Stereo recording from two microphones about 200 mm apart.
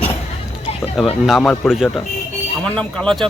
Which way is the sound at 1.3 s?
5° left (ahead or behind).